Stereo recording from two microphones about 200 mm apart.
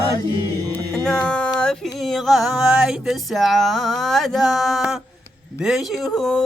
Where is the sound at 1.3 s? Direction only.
5° left (ahead or behind).